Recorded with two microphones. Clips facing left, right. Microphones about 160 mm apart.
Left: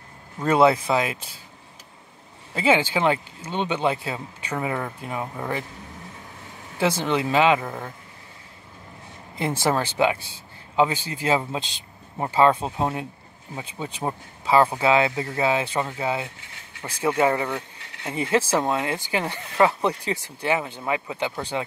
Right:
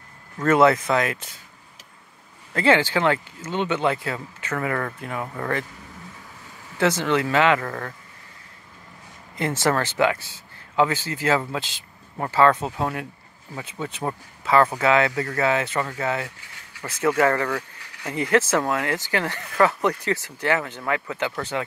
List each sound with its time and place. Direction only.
0.4 s speech: 15° left (ahead or behind)
2.5 s speech: 10° left (ahead or behind)
6.8 s speech: 15° left (ahead or behind)
9.4 s speech: 15° left (ahead or behind)